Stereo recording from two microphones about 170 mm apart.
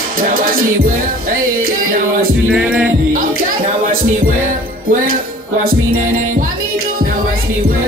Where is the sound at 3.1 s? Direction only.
55° right (ahead or behind).